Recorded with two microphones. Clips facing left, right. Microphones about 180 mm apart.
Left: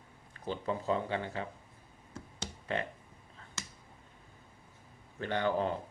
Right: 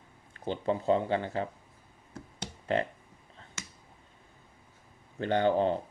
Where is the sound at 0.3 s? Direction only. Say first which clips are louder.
Right 5 dB; 30° right (ahead or behind).